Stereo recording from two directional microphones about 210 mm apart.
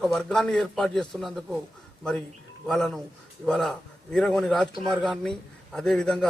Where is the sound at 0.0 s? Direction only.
Centre (ahead or behind).